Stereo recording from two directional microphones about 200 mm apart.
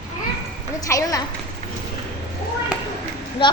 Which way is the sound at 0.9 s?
15° left (ahead or behind).